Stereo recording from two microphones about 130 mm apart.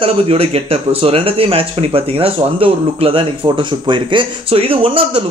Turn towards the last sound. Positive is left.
turn(degrees=-45)  # may be behind; listen again after turning